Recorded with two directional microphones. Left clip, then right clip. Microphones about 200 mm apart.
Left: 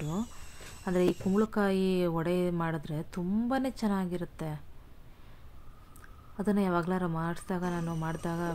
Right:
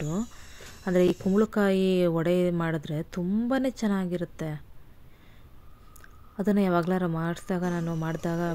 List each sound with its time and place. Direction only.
0.0 s a sound: 15° right (ahead or behind)
0.8 s speech: 20° right (ahead or behind)
6.3 s speech: 20° right (ahead or behind)